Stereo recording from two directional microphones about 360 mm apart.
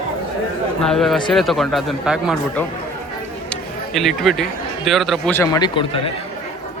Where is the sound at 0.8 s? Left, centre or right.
Centre.